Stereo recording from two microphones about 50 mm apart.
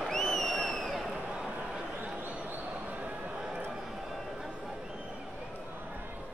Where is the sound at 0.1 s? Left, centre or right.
Centre.